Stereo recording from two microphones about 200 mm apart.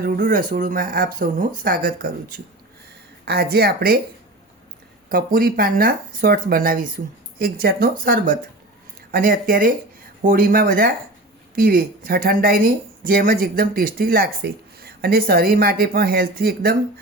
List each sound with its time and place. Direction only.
0.0 s speech: 45° right (ahead or behind)
5.0 s speech: 45° right (ahead or behind)